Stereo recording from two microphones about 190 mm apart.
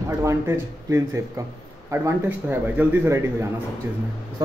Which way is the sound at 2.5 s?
10° right (ahead or behind).